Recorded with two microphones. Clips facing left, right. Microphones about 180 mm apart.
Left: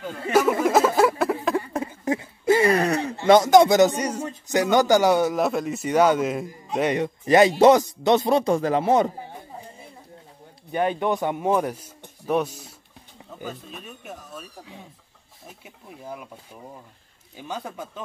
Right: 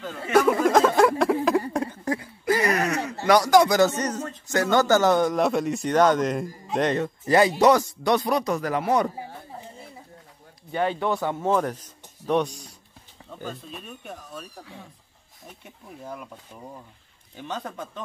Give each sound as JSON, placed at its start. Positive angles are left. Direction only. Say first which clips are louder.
{"t": 0.0, "sound": "a sound", "louder": "even", "side_deg": 5}
{"t": 2.0, "sound": "a sound", "louder": "left 7 dB", "side_deg": 25}
{"t": 3.3, "sound": "a man's voice", "louder": "left 3 dB", "side_deg": 20}
{"t": 6.9, "sound": "speech", "louder": "left 5 dB", "side_deg": 20}
{"t": 10.7, "sound": "a man's voice", "louder": "left 2 dB", "side_deg": 15}
{"t": 15.6, "sound": "a man's voice", "louder": "even", "side_deg": 10}
{"t": 17.4, "sound": "a man's voice", "louder": "even", "side_deg": 10}